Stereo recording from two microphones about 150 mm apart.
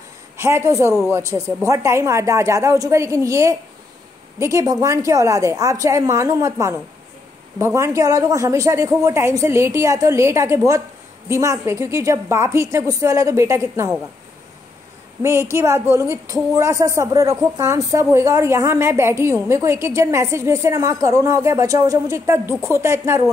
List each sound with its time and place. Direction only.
0.4 s speech: 15° right (ahead or behind)
15.2 s speech: 20° right (ahead or behind)